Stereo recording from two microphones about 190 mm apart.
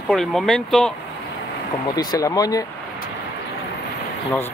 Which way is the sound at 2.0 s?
20° left (ahead or behind).